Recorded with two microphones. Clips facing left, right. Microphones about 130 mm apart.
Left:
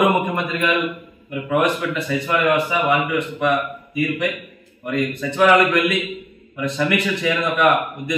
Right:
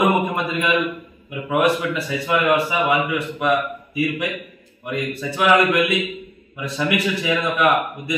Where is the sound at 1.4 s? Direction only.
5° right (ahead or behind).